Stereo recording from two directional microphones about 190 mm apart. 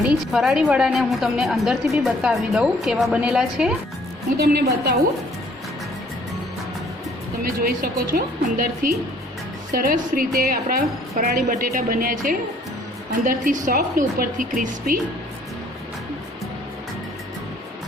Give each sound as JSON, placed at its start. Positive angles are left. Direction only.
{"t": 0.3, "sound": "a woman's voice", "side_deg": 0}
{"t": 4.4, "sound": "a woman's voice", "side_deg": -55}
{"t": 7.4, "sound": "speech", "side_deg": -50}
{"t": 9.7, "sound": "speech", "side_deg": -50}